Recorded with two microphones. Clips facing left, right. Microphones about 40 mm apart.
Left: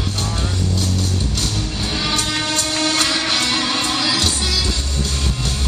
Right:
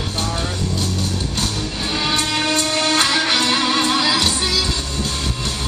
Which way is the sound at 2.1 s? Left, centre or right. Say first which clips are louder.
Right 3 dB; right.